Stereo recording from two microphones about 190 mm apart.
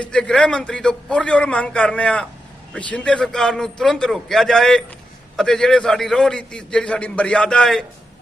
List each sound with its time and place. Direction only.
0.0 s a man's voice: 5° left (ahead or behind)